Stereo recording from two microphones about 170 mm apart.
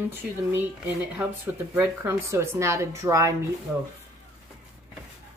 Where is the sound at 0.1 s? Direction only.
10° right (ahead or behind).